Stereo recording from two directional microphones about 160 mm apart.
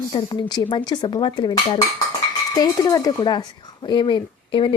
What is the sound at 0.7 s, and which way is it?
Dishes, 30° left (ahead or behind).